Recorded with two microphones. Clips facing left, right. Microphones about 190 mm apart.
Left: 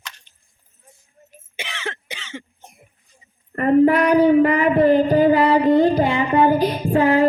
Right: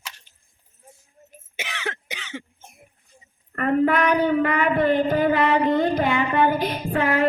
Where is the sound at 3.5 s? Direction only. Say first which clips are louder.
Left 6 dB; 30° left (ahead or behind).